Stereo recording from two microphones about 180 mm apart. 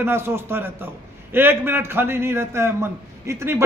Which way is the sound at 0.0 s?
15° right (ahead or behind).